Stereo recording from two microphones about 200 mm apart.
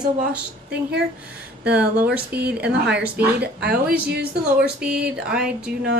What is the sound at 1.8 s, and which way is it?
Speech, 5° right (ahead or behind).